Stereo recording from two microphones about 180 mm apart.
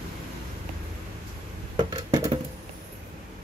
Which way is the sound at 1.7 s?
25° right (ahead or behind).